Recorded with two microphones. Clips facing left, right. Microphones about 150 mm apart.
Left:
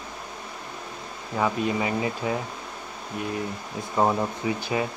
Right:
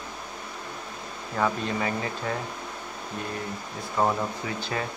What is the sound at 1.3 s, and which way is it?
Speech, 10° left (ahead or behind).